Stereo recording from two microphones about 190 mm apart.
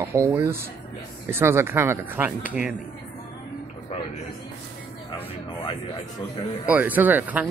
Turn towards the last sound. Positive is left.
turn(degrees=-10)  # may be behind; listen again after turning